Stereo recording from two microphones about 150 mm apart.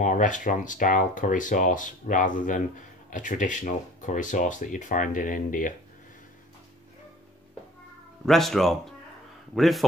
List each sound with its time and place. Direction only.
0.0 s speech: 55° left (ahead or behind)
8.3 s speech: centre (ahead or behind)